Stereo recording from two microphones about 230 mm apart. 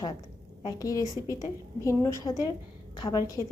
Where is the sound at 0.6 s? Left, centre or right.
Centre.